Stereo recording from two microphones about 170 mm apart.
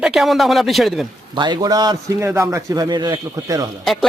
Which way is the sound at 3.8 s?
Centre (ahead or behind).